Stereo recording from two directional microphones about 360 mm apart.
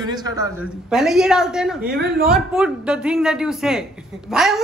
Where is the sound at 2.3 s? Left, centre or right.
Centre.